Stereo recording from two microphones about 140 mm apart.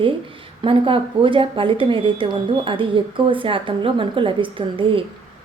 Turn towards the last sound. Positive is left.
turn(degrees=-40)  # may be behind; listen again after turning